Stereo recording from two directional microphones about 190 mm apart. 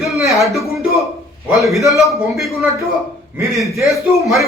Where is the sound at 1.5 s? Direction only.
Centre (ahead or behind).